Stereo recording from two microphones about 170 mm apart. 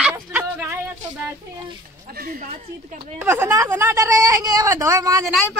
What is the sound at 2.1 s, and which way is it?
Speech, 60° right (ahead or behind).